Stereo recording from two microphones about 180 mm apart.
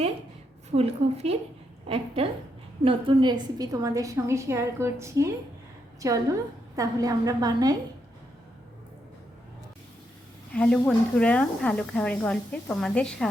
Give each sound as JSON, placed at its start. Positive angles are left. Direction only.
{"t": 0.7, "sound": "a woman's voice", "side_deg": -35}
{"t": 2.8, "sound": "a woman's voice", "side_deg": -25}
{"t": 10.5, "sound": "speech", "side_deg": 5}